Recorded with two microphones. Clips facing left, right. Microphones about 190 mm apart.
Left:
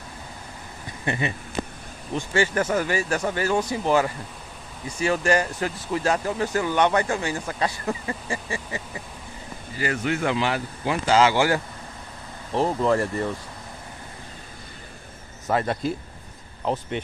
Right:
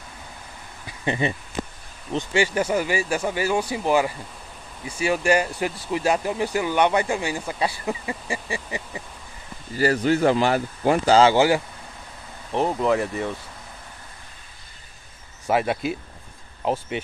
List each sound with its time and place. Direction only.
1.0 s speech: 25° right (ahead or behind)
9.8 s speech: 35° right (ahead or behind)
11.1 s speech: 30° right (ahead or behind)
12.5 s speech: 5° right (ahead or behind)
15.4 s speech: 10° right (ahead or behind)